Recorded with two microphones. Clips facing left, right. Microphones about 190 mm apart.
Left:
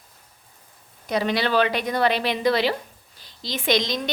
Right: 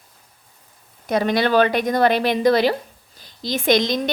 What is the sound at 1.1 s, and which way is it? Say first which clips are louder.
Speech: right 4 dB; 50° right (ahead or behind).